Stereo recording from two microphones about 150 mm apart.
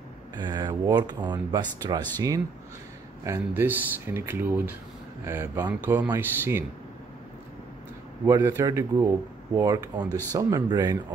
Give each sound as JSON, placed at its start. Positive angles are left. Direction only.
{"t": 0.4, "sound": "speech", "side_deg": -30}
{"t": 8.4, "sound": "speech", "side_deg": -20}
{"t": 10.0, "sound": "speech", "side_deg": 15}
{"t": 10.3, "sound": "speech", "side_deg": -25}